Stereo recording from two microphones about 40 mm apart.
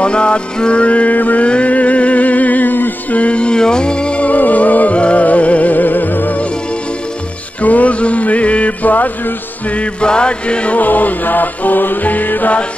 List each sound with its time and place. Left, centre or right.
0.0 s music: left
1.1 s music: left
1.4 s music: left
3.2 s music: left
4.3 s music: left
7.6 s mantra: left
9.7 s music: left
10.8 s music: left